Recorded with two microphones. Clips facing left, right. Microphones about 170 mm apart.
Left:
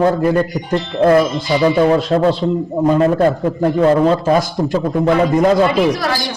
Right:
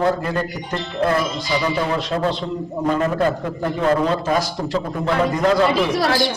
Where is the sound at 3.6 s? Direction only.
40° left (ahead or behind).